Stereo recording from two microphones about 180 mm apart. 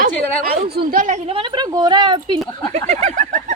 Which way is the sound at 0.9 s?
45° right (ahead or behind).